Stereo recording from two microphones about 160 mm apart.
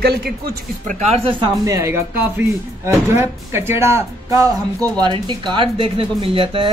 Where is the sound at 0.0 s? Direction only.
90° right.